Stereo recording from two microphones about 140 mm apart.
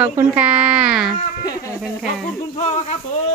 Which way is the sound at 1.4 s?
25° left (ahead or behind).